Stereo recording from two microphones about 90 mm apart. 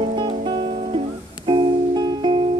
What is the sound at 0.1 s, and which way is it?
Music, 65° right (ahead or behind).